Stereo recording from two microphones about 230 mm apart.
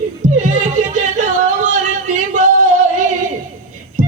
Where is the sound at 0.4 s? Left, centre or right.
Right.